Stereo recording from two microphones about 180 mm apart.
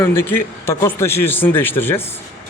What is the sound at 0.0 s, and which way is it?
Speech, 10° left (ahead or behind).